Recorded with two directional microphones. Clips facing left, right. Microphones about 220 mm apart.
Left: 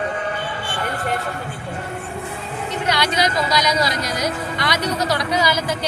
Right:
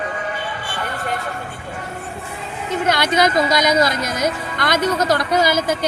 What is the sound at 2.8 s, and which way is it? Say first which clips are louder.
Speech: right 4 dB; 50° right (ahead or behind).